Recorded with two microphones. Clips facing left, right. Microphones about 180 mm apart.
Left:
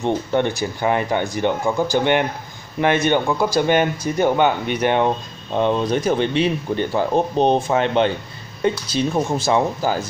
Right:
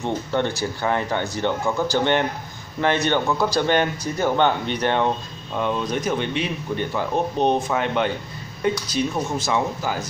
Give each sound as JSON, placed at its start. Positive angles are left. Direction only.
{"t": 0.0, "sound": "speech", "side_deg": 15}
{"t": 5.5, "sound": "speech", "side_deg": 30}